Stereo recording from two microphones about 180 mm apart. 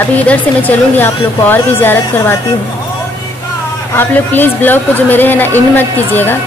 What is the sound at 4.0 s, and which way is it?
Speech, 10° left (ahead or behind).